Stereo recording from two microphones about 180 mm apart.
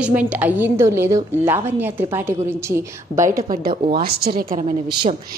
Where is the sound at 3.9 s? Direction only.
60° right (ahead or behind).